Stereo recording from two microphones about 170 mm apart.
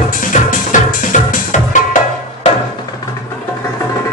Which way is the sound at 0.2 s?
50° left (ahead or behind).